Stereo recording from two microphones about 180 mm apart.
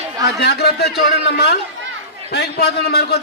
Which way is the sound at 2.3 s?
65° left (ahead or behind).